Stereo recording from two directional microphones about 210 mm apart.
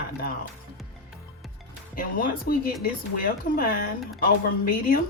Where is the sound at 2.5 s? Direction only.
45° left (ahead or behind).